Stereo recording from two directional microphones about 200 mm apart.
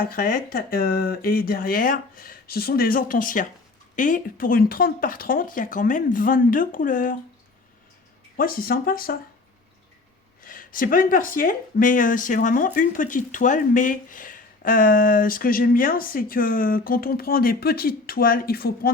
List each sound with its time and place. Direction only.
0.0 s speech: 45° left (ahead or behind)
8.4 s speech: 45° left (ahead or behind)
10.4 s speech: 45° left (ahead or behind)